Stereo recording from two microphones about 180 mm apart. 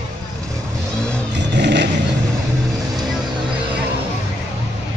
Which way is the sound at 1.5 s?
70° right (ahead or behind).